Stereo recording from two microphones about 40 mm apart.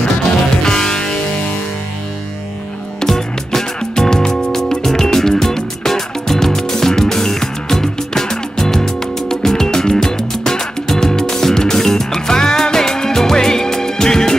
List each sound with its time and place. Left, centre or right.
0.2 s music: centre
3.0 s music: centre